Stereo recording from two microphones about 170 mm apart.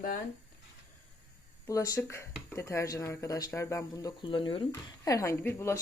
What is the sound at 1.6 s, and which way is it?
Speech, 20° left (ahead or behind).